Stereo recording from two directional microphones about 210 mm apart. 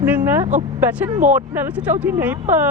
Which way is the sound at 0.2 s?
10° right (ahead or behind).